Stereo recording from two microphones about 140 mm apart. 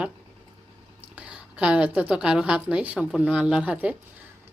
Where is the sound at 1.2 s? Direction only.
10° right (ahead or behind).